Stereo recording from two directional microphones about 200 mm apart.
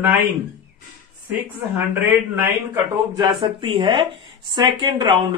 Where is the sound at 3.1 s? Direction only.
25° right (ahead or behind).